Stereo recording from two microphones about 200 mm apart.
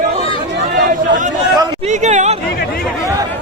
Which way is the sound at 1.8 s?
35° right (ahead or behind).